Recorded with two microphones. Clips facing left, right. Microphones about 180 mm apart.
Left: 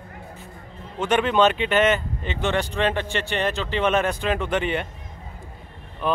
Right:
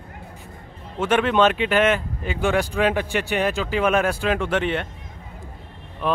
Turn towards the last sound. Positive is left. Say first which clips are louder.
# right 1 dB
turn(degrees=0)  # may be behind; listen again after turning